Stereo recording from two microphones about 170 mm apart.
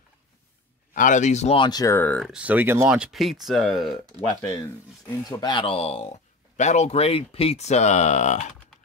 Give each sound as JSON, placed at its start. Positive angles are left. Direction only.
{"t": 0.9, "sound": "speech", "side_deg": 50}
{"t": 1.6, "sound": "speech", "side_deg": 25}
{"t": 2.3, "sound": "speech", "side_deg": -10}
{"t": 4.6, "sound": "speech", "side_deg": 15}
{"t": 5.4, "sound": "speech", "side_deg": 30}